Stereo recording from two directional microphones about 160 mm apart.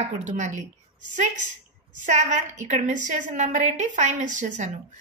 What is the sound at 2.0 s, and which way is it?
A woman's voice, 50° right (ahead or behind).